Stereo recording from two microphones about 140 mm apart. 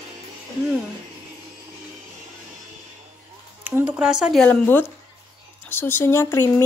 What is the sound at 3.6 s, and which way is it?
Speech, 10° right (ahead or behind).